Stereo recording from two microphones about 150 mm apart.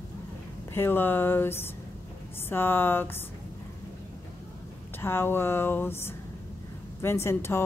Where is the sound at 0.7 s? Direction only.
15° left (ahead or behind).